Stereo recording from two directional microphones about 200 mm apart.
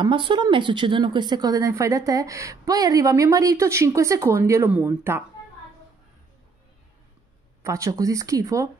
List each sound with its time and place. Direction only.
0.0 s a woman's voice: 25° right (ahead or behind)
7.6 s a woman's voice: 15° right (ahead or behind)